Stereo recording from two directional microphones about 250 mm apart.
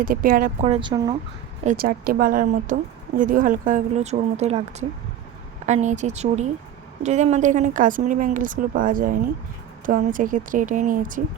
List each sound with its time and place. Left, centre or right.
0.0 s speech: right; by 1.1 s centre
1.6 s a woman's voice: right